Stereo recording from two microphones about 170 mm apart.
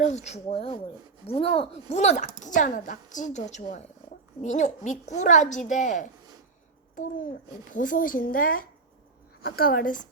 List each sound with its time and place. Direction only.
0.0 s a woman's voice: 40° left (ahead or behind)
7.7 s a woman's voice: 50° left (ahead or behind)